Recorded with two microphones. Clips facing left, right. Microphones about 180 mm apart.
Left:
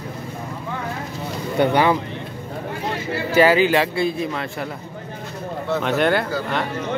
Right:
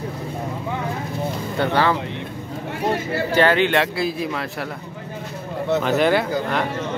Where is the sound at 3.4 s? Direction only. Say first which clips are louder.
Left 2 dB; 5° left (ahead or behind).